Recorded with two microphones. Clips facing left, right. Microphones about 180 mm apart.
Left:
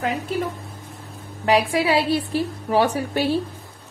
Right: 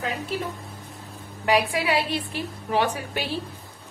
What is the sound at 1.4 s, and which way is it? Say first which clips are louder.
A woman's voice: left 4 dB; 35° left (ahead or behind).